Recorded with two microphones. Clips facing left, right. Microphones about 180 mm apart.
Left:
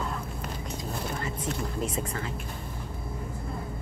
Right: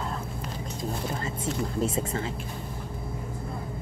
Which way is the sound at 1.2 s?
25° right (ahead or behind).